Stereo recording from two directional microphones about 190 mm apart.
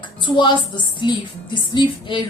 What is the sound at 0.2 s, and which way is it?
A woman's voice, 25° left (ahead or behind).